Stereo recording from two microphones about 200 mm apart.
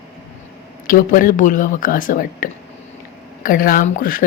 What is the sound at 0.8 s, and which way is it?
A woman's voice, 45° left (ahead or behind).